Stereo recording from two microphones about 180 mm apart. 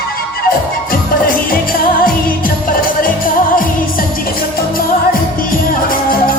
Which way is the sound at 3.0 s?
50° left (ahead or behind).